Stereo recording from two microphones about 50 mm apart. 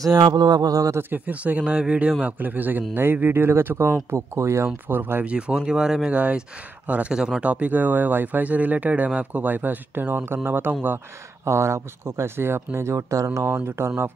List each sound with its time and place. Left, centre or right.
1.1 s speech: right
2.2 s speech: right
4.8 s speech: right
5.2 s speech: right
5.6 s speech: centre
6.1 s speech: right
7.2 s speech: centre
7.4 s speech: right
11.4 s speech: right
13.7 s speech: right